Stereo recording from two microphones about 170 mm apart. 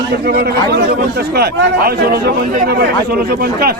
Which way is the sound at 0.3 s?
70° right (ahead or behind).